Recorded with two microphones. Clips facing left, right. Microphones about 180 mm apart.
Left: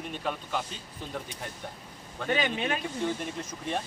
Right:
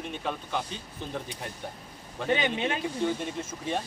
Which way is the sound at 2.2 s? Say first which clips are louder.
Right 2 dB; 25° right (ahead or behind).